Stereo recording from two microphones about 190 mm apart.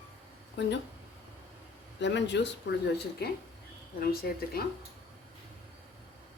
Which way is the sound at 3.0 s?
55° left (ahead or behind).